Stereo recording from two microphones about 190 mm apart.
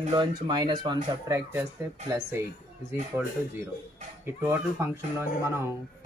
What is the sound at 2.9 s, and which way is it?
Speech, 15° right (ahead or behind).